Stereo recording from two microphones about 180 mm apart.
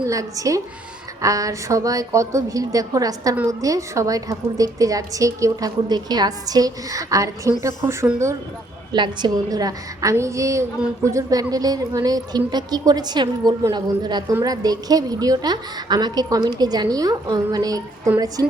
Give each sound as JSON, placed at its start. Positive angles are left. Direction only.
{"t": 0.0, "sound": "a woman's voice", "side_deg": -20}